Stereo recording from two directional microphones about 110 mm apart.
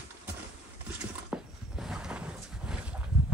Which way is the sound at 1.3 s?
10° right (ahead or behind).